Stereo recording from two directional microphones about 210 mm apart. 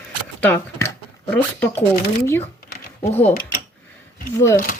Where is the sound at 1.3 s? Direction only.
5° left (ahead or behind).